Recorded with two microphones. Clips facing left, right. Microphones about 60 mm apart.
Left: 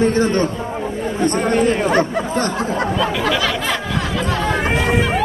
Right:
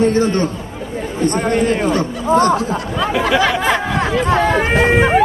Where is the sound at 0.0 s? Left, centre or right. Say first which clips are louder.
Right 1 dB; left.